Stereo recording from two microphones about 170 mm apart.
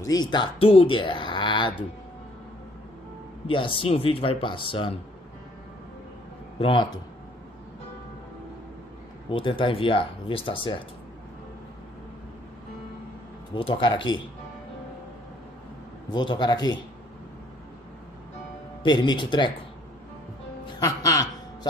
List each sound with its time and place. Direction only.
0.0 s speech: 25° left (ahead or behind)
3.4 s speech: 30° left (ahead or behind)
6.6 s speech: 30° left (ahead or behind)
9.3 s speech: 30° left (ahead or behind)
13.6 s speech: 30° left (ahead or behind)
16.1 s speech: 25° left (ahead or behind)
18.8 s speech: 25° left (ahead or behind)
20.6 s speech: 20° left (ahead or behind)